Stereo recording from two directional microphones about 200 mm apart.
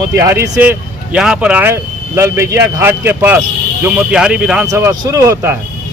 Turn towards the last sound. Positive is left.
turn(degrees=-15)  # may be behind; listen again after turning